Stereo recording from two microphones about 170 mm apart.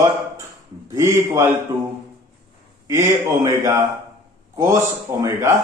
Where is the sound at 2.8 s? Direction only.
15° right (ahead or behind).